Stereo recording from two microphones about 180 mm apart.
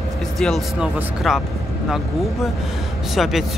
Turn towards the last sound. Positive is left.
turn(degrees=0)  # may be behind; listen again after turning